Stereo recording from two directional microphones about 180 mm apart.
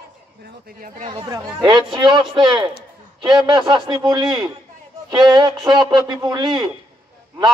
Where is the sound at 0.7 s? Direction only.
45° right (ahead or behind).